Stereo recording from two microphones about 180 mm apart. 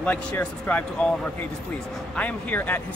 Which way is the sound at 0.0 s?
5° left (ahead or behind).